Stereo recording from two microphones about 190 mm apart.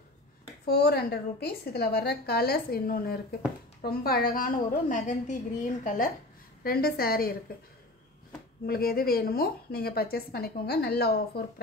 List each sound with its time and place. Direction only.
0.7 s a woman's voice: 55° left (ahead or behind)
8.6 s a woman's voice: 50° left (ahead or behind)